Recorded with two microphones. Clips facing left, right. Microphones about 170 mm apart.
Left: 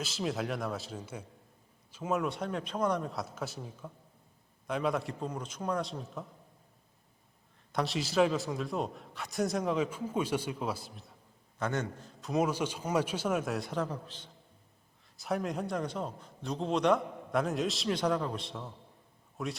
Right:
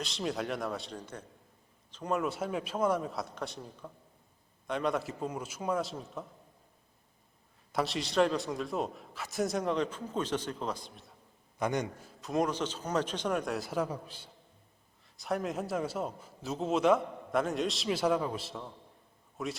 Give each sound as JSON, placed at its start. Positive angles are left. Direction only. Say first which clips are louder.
{"t": 0.0, "sound": "a man's voice", "louder": "even", "side_deg": 0}
{"t": 7.7, "sound": "a man's voice", "louder": "even", "side_deg": 0}
{"t": 11.6, "sound": "a man's voice", "louder": "right 2 dB", "side_deg": -15}
{"t": 12.2, "sound": "a man's voice", "louder": "left 1 dB", "side_deg": 0}